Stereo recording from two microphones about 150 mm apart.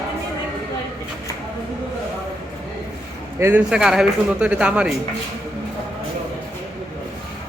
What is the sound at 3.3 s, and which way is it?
Speech, 15° right (ahead or behind).